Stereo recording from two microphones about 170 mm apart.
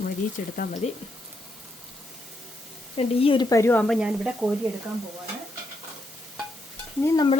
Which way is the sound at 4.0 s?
5° right (ahead or behind).